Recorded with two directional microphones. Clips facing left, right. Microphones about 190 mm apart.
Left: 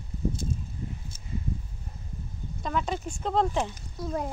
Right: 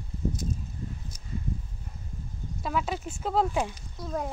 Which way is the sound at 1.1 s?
25° left (ahead or behind).